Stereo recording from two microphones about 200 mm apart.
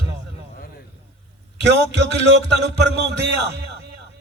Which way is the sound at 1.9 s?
60° right (ahead or behind).